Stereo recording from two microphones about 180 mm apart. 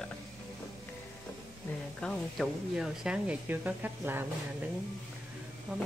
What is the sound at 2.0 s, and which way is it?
Speech, centre (ahead or behind).